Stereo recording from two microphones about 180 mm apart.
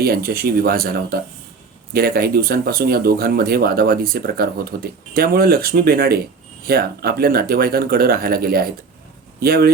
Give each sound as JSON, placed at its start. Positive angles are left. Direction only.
{"t": 0.0, "sound": "speech", "side_deg": -55}